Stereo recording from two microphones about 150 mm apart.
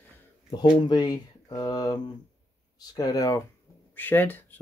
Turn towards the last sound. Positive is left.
turn(degrees=15)  # may be behind; listen again after turning